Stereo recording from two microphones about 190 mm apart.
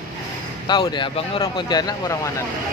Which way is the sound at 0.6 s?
25° left (ahead or behind).